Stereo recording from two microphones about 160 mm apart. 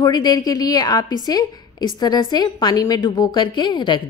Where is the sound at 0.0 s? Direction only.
25° left (ahead or behind).